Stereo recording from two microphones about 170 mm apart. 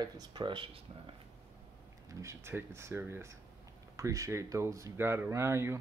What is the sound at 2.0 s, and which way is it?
Speech, 15° right (ahead or behind).